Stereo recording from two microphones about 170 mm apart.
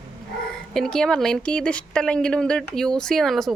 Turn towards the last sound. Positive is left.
turn(degrees=0)  # may be behind; listen again after turning